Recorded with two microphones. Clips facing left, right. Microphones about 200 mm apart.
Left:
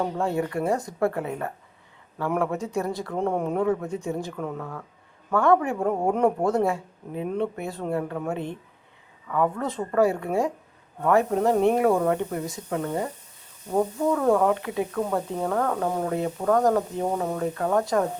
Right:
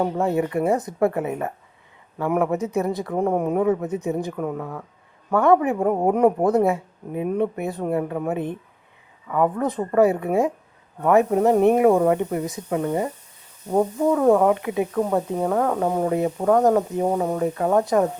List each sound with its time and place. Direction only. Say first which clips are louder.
0.0 s speech: right 4 dB; 20° right (ahead or behind)
9.3 s speech: right 4 dB; 15° right (ahead or behind)